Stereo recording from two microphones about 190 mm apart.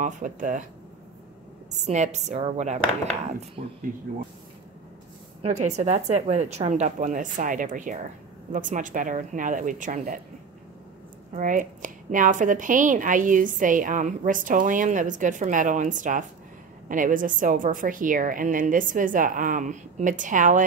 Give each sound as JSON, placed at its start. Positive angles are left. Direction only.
{"t": 0.0, "sound": "speech", "side_deg": -40}
{"t": 1.7, "sound": "speech", "side_deg": -40}
{"t": 5.4, "sound": "a woman's voice", "side_deg": -35}
{"t": 11.3, "sound": "a woman's voice", "side_deg": -45}